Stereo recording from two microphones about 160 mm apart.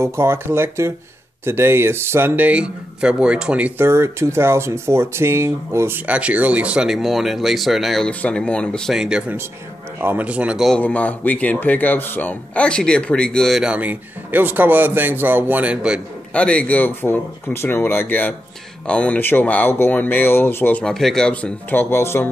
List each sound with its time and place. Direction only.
0.0 s speech: 15° right (ahead or behind)
10.8 s speech: 10° left (ahead or behind); by 16.0 s 5° right (ahead or behind)
16.3 s speech: 5° left (ahead or behind)